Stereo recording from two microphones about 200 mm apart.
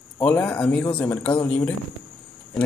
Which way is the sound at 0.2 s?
5° left (ahead or behind).